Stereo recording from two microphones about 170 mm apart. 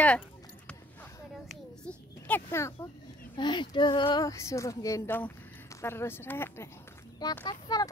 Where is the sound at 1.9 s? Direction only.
10° left (ahead or behind).